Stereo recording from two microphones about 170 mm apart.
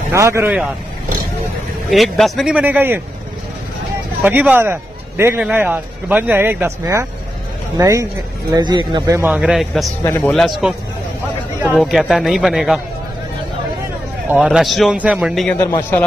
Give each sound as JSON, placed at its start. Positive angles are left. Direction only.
{"t": 0.1, "sound": "speech", "side_deg": -15}
{"t": 1.9, "sound": "speech", "side_deg": 0}
{"t": 4.2, "sound": "speech", "side_deg": -10}
{"t": 9.3, "sound": "speech", "side_deg": -5}
{"t": 10.0, "sound": "a man's voice", "side_deg": 15}
{"t": 10.6, "sound": "speech", "side_deg": -5}
{"t": 14.3, "sound": "speech", "side_deg": -5}
{"t": 15.4, "sound": "a man's voice", "side_deg": 15}